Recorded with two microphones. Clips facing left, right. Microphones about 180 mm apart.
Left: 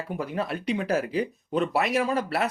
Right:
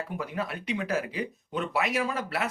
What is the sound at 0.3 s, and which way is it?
Speech, 35° left (ahead or behind).